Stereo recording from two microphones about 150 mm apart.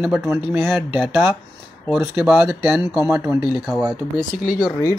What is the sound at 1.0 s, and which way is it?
Speech, 10° right (ahead or behind).